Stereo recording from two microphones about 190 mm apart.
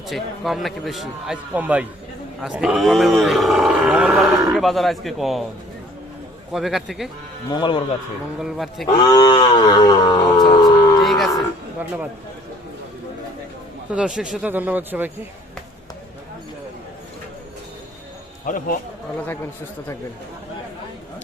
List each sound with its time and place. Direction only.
0.1 s a man's voice: centre (ahead or behind)
6.5 s a man's voice: centre (ahead or behind)
7.5 s speech: 25° left (ahead or behind)
8.4 s a man's voice: centre (ahead or behind)
9.0 s a sound: 20° left (ahead or behind)
11.0 s cattle: centre (ahead or behind)
11.3 s a sound: 10° right (ahead or behind)
13.9 s speech: 5° right (ahead or behind)